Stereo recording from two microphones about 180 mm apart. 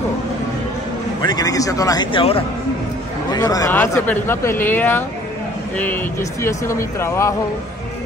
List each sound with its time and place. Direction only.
1.2 s speech: 20° left (ahead or behind)
6.4 s speech: 15° left (ahead or behind)